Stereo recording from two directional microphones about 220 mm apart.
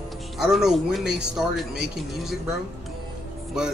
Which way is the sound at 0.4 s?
Centre (ahead or behind).